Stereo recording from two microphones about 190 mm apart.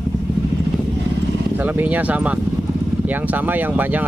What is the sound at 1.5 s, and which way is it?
Speech, 10° right (ahead or behind).